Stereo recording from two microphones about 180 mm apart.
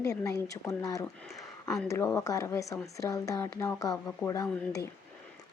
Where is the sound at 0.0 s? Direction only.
15° left (ahead or behind).